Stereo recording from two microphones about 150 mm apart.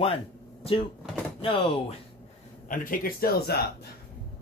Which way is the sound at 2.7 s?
65° left (ahead or behind).